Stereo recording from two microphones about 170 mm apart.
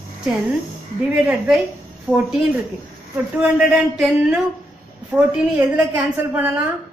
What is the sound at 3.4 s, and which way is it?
A man's voice, 5° right (ahead or behind).